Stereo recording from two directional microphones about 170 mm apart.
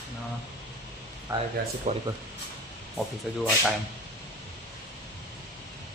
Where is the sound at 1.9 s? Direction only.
45° right (ahead or behind).